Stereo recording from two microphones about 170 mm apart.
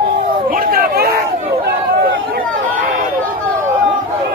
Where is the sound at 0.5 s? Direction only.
60° right (ahead or behind).